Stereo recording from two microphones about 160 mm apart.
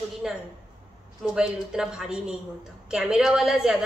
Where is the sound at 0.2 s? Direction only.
5° right (ahead or behind).